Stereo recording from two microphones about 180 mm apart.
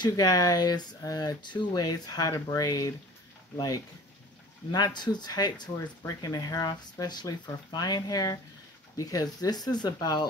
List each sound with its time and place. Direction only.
0.0 s speech: 20° left (ahead or behind)